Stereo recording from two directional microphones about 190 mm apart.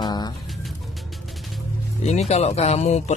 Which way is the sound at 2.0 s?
35° left (ahead or behind).